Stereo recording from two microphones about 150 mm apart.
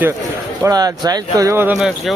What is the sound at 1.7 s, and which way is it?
Speech, 5° right (ahead or behind).